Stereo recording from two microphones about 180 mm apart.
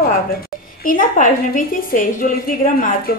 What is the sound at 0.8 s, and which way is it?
A woman's voice, 50° left (ahead or behind).